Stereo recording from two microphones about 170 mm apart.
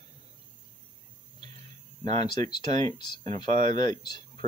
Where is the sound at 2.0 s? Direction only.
25° left (ahead or behind).